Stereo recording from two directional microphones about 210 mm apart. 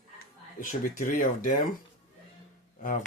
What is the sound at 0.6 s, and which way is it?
Speech, 40° left (ahead or behind).